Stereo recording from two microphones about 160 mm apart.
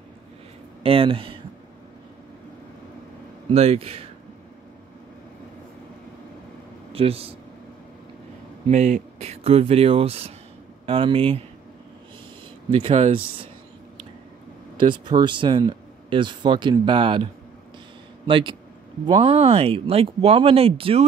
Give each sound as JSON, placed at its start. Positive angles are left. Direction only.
{"t": 0.8, "sound": "speech", "side_deg": -35}
{"t": 3.4, "sound": "speech", "side_deg": -40}
{"t": 6.9, "sound": "a man's voice", "side_deg": -35}
{"t": 8.6, "sound": "speech", "side_deg": -50}
{"t": 12.7, "sound": "speech", "side_deg": -40}
{"t": 14.9, "sound": "speech", "side_deg": -30}